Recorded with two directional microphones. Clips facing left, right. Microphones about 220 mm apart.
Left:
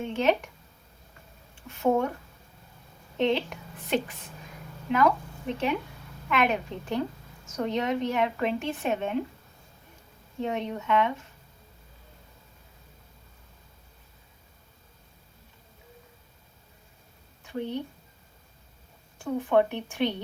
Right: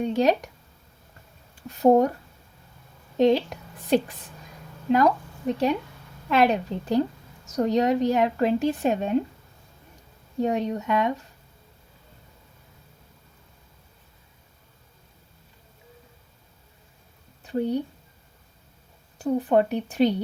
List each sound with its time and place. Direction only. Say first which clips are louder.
0.1 s speech: right 1 dB; 40° right (ahead or behind)
1.5 s speech: right 7 dB; 40° right (ahead or behind)
3.2 s a woman's voice: right 6 dB; 40° right (ahead or behind)
5.5 s speech: right 5 dB; 35° right (ahead or behind)
10.4 s speech: right 5 dB; 35° right (ahead or behind)
17.4 s a sound: right 7 dB; 35° right (ahead or behind)
19.2 s speech: right 3 dB; 35° right (ahead or behind)